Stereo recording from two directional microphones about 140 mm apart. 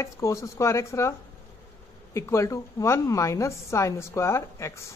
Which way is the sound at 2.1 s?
20° left (ahead or behind).